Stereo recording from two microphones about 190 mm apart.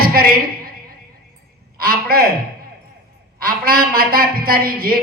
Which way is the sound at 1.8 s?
50° right (ahead or behind).